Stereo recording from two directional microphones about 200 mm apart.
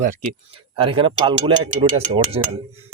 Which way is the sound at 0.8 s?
25° right (ahead or behind).